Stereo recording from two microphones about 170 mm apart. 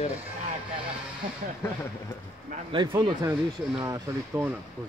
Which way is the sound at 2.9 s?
20° right (ahead or behind).